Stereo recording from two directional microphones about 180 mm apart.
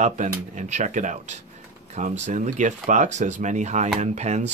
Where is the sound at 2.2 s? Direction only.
40° right (ahead or behind).